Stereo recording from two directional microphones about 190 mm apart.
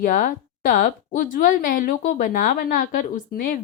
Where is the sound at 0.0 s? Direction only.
40° left (ahead or behind).